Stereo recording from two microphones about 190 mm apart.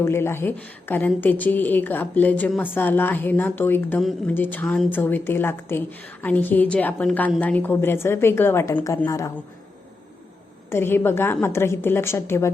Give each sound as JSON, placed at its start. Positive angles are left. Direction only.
{"t": 0.0, "sound": "a woman's voice", "side_deg": 15}
{"t": 10.7, "sound": "a woman's voice", "side_deg": 10}